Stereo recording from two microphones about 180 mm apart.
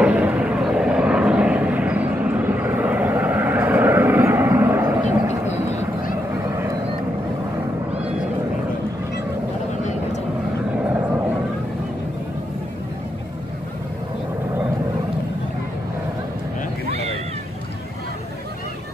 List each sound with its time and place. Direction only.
0.0 s vehicle: 10° right (ahead or behind)
5.5 s vehicle: 40° left (ahead or behind)